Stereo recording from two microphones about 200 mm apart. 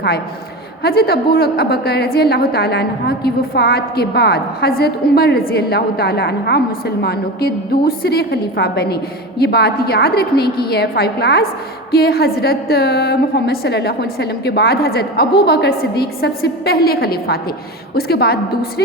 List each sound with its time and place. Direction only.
0.8 s a woman's voice: 50° left (ahead or behind)